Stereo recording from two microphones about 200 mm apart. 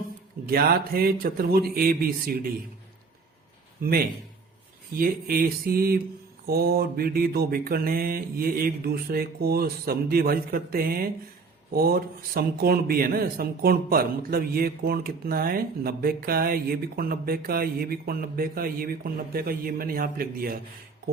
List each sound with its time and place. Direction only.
0.4 s a man's voice: 50° right (ahead or behind)
3.8 s a man's voice: 50° right (ahead or behind)
4.9 s a man's voice: 45° right (ahead or behind)